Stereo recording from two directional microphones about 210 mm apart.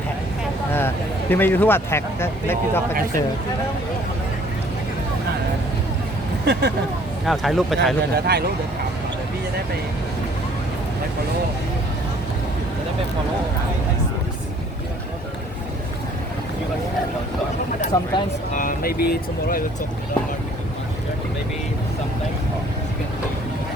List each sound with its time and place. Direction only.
0.7 s speech: 10° left (ahead or behind)
6.4 s speech: 55° right (ahead or behind)
7.3 s speech: centre (ahead or behind)
8.1 s speech: 50° right (ahead or behind)
17.9 s speech: 20° left (ahead or behind)
18.5 s speech: 40° left (ahead or behind)